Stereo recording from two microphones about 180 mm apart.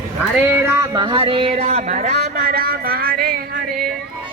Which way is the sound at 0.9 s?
25° right (ahead or behind).